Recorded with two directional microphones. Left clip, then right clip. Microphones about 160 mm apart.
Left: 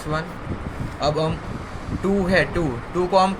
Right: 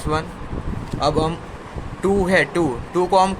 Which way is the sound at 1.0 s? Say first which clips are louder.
Right 2 dB; 70° right (ahead or behind).